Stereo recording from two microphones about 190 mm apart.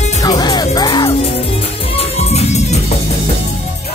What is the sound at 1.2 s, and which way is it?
Music, 30° left (ahead or behind).